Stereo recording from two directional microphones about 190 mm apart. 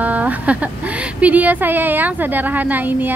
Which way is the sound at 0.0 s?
10° right (ahead or behind).